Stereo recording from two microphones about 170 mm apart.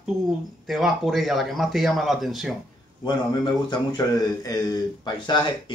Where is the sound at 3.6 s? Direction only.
25° left (ahead or behind).